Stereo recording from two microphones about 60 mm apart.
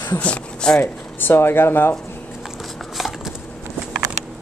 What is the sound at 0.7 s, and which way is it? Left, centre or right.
Speech, left.